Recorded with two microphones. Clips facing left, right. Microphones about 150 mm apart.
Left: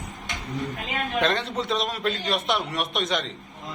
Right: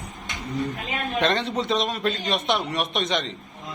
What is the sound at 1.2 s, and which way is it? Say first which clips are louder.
A man's voice: right 2 dB; centre (ahead or behind).